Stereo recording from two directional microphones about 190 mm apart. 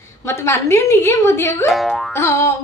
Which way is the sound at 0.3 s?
15° left (ahead or behind).